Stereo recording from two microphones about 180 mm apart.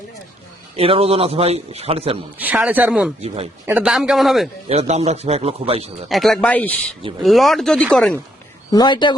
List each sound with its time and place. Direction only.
0.8 s a man's voice: 35° right (ahead or behind)
2.4 s a man's voice: 10° right (ahead or behind)
3.2 s a man's voice: 35° right (ahead or behind)
3.7 s speech: 5° right (ahead or behind)
4.7 s a man's voice: 35° right (ahead or behind)
6.1 s speech: centre (ahead or behind)
8.7 s speech: 25° left (ahead or behind)